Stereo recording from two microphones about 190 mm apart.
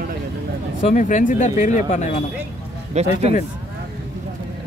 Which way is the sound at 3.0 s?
35° right (ahead or behind).